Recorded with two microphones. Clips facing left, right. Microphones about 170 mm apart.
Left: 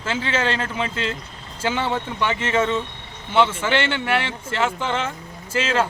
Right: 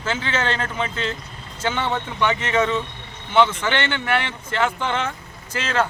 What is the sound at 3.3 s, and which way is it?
Speech, 5° left (ahead or behind).